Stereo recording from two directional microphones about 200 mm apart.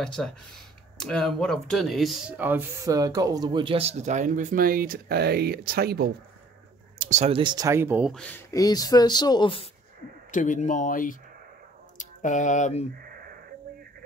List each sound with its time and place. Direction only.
0.0 s speech: 5° left (ahead or behind); by 6.1 s 50° right (ahead or behind)
7.0 s speech: 35° right (ahead or behind); by 8.1 s 10° right (ahead or behind)
8.1 s speech: 5° left (ahead or behind); by 9.7 s 25° left (ahead or behind)
10.3 s speech: 40° left (ahead or behind)
13.1 s wheeze: 50° right (ahead or behind)